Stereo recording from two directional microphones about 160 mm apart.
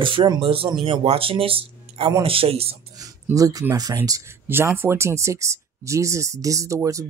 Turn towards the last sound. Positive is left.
turn(degrees=-20)  # may be behind; listen again after turning